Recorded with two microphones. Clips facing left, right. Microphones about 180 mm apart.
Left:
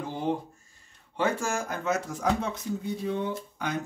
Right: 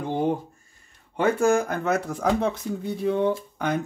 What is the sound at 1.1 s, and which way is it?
Speech, 60° right (ahead or behind).